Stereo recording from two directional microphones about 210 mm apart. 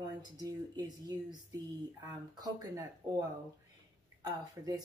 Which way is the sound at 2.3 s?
20° right (ahead or behind).